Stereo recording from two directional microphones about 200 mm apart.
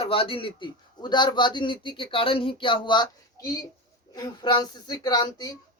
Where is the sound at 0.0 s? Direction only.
30° left (ahead or behind).